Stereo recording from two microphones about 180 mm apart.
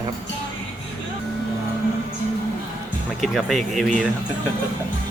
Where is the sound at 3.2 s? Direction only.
Centre (ahead or behind).